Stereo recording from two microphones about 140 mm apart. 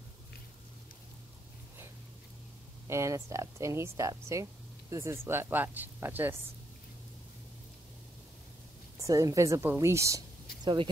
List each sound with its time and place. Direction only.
2.9 s speech: 20° right (ahead or behind)
9.0 s speech: 25° right (ahead or behind)
10.6 s speech: 35° right (ahead or behind)